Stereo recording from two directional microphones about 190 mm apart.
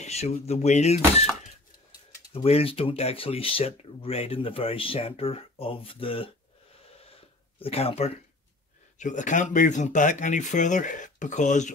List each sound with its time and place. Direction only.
0.0 s speech: 35° left (ahead or behind)
2.3 s speech: 30° left (ahead or behind)
7.0 s wheeze: 30° left (ahead or behind)
7.6 s speech: 30° left (ahead or behind)